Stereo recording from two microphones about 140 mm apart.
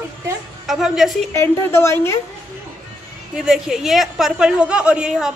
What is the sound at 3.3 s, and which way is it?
A woman's voice, 5° right (ahead or behind).